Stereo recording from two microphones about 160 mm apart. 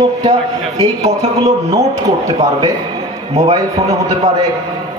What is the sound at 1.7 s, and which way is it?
Speech, 20° right (ahead or behind).